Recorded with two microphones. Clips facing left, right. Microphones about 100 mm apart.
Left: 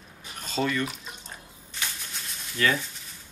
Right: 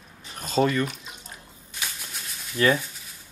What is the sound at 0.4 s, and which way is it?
Speech, 40° right (ahead or behind).